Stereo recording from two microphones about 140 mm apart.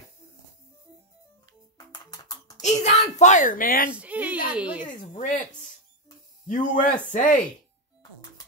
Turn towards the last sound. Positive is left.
turn(degrees=70)  # may be behind; listen again after turning